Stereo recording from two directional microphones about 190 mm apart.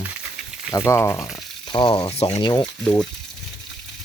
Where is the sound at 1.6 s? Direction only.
25° left (ahead or behind).